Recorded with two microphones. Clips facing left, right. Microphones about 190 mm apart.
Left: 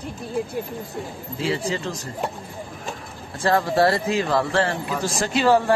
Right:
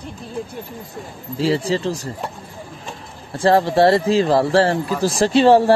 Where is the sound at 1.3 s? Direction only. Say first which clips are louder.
Right 6 dB; 35° right (ahead or behind).